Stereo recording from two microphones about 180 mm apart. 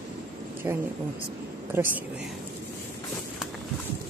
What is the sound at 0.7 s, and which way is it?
Speech, 15° right (ahead or behind).